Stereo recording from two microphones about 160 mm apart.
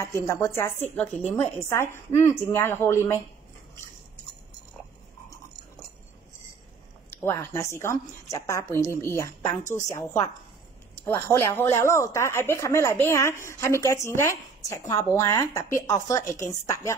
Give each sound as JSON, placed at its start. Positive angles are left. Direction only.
{"t": 0.0, "sound": "speech", "side_deg": 20}
{"t": 7.1, "sound": "a woman's voice", "side_deg": 15}